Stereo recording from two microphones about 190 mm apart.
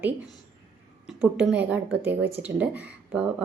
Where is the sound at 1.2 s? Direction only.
10° right (ahead or behind).